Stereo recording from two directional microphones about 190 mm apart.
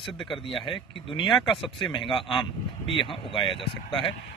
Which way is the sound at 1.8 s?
25° left (ahead or behind).